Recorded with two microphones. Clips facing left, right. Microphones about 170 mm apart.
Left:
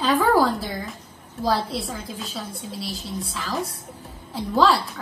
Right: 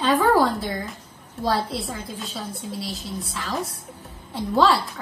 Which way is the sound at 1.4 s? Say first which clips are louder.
Even; centre (ahead or behind).